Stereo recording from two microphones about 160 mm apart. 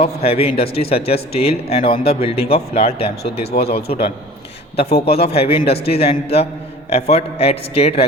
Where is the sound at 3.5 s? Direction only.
80° left.